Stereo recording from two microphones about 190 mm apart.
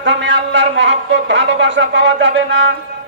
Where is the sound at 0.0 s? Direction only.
70° right (ahead or behind).